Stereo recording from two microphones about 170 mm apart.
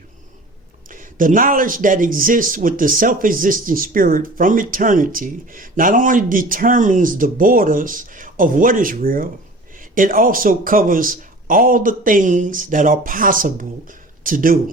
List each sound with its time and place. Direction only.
0.9 s a man's voice: 50° right (ahead or behind)